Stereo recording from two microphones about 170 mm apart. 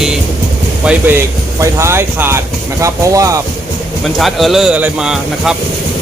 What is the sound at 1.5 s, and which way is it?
Speech, 15° right (ahead or behind).